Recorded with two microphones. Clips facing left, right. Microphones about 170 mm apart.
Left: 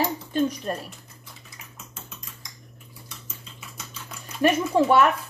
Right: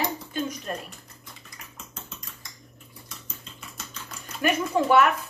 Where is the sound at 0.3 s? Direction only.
35° left (ahead or behind).